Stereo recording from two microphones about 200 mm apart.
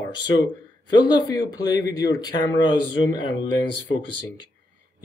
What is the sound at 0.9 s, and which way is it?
A man's voice, 20° left (ahead or behind).